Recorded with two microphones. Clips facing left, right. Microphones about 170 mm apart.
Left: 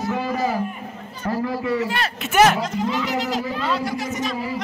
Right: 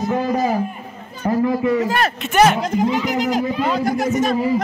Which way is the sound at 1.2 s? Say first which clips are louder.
Right 6 dB; 20° right (ahead or behind).